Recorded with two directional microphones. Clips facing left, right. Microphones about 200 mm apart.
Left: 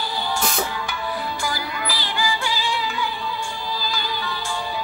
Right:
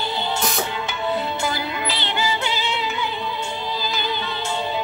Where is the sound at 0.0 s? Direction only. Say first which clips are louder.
Right 1 dB; 25° right (ahead or behind).